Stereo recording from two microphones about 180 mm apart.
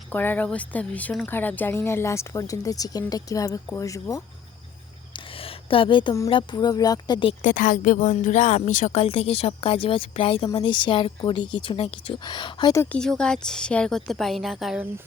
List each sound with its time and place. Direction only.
0.1 s a woman's voice: 10° left (ahead or behind)
5.1 s a woman's voice: 30° left (ahead or behind)
7.4 s a woman's voice: 45° left (ahead or behind); by 14.8 s centre (ahead or behind)